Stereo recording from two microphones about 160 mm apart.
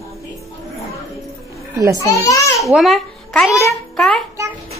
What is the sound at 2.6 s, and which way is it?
A child's voice, centre (ahead or behind).